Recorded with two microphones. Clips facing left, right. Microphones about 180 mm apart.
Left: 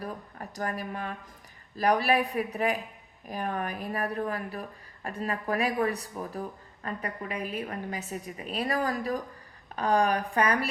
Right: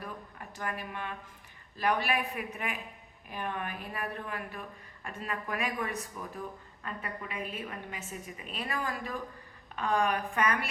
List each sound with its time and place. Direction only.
0.0 s a woman's voice: 40° left (ahead or behind)